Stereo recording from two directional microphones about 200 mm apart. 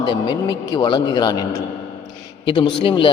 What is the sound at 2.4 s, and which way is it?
Speech, 20° left (ahead or behind).